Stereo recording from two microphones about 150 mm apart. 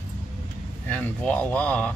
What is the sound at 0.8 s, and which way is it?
Speech, 10° left (ahead or behind).